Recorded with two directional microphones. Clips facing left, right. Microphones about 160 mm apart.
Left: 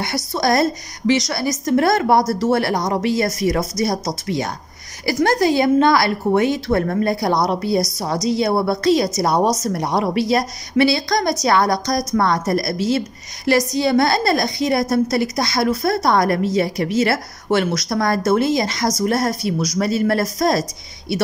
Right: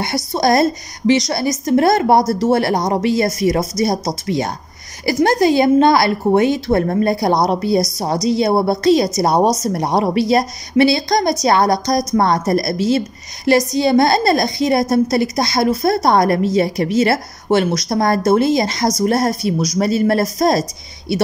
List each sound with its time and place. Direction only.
0.0 s a woman's voice: 20° right (ahead or behind)
2.7 s speech: 35° right (ahead or behind)
3.0 s a woman's voice: 25° right (ahead or behind)